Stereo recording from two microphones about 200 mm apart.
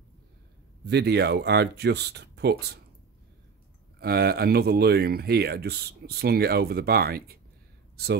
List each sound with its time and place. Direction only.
0.8 s speech: 55° right (ahead or behind)
4.0 s speech: 50° right (ahead or behind)
7.9 s a sound: 50° right (ahead or behind)